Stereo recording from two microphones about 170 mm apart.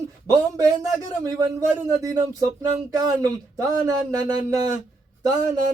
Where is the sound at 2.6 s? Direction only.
20° right (ahead or behind).